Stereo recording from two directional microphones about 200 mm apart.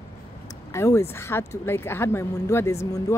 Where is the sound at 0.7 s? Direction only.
15° left (ahead or behind).